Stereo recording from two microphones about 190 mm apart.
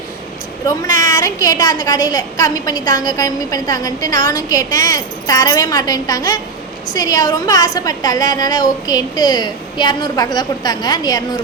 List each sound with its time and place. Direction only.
0.8 s a woman's voice: 15° left (ahead or behind)